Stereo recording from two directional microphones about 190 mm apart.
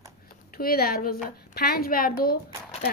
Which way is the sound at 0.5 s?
55° left (ahead or behind).